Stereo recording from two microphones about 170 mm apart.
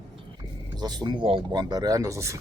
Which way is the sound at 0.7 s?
25° right (ahead or behind).